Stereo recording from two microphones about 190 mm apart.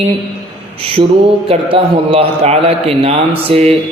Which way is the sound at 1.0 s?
25° right (ahead or behind).